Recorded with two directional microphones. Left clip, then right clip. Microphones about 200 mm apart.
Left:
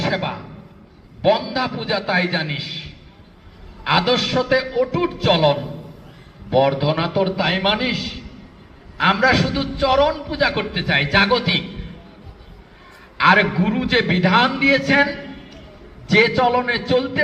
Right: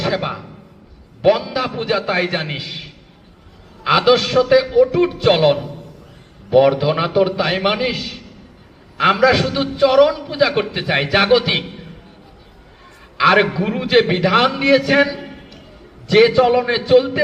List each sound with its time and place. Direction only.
0.0 s music: 30° right (ahead or behind)
1.2 s a man's voice: 30° right (ahead or behind)
13.1 s a man's voice: 30° right (ahead or behind)